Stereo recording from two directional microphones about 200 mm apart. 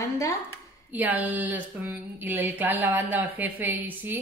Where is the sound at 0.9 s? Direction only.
10° right (ahead or behind).